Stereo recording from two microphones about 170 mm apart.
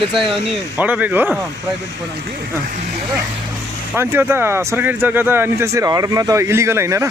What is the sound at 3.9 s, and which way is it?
Speech, 15° right (ahead or behind).